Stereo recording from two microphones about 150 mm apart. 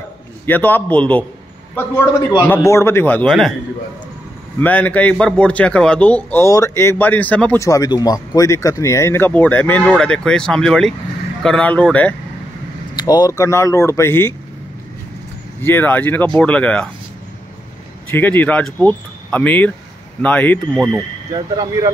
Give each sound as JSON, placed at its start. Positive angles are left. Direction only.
{"t": 0.5, "sound": "speech", "side_deg": 10}
{"t": 3.3, "sound": "a man's voice", "side_deg": 0}
{"t": 4.6, "sound": "speech", "side_deg": 10}
{"t": 7.6, "sound": "speech", "side_deg": 25}
{"t": 12.9, "sound": "speech", "side_deg": 30}
{"t": 15.6, "sound": "speech", "side_deg": 15}
{"t": 18.1, "sound": "speech", "side_deg": 10}
{"t": 20.7, "sound": "a man's voice", "side_deg": -5}
{"t": 21.3, "sound": "speech", "side_deg": -25}